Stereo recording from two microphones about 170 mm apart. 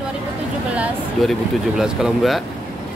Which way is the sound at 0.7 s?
5° right (ahead or behind).